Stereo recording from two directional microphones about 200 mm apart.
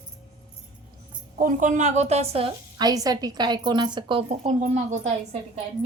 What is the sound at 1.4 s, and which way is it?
A woman's voice, 40° right (ahead or behind).